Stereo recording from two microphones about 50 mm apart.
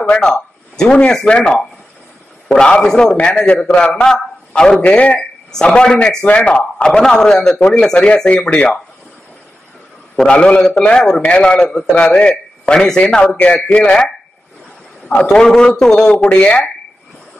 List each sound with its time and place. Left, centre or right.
0.2 s a man's voice: centre
4.7 s a man's voice: left
5.5 s a man's voice: centre
10.1 s a man's voice: left
15.2 s speech: centre